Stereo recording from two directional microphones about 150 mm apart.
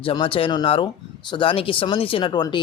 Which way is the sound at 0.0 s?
35° left (ahead or behind).